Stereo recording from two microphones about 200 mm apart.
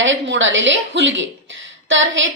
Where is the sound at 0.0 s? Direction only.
70° right (ahead or behind).